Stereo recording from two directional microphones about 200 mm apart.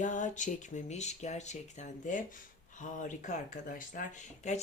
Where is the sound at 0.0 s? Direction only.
40° left (ahead or behind).